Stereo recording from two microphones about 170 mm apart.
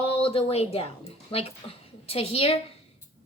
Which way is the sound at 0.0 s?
35° left (ahead or behind).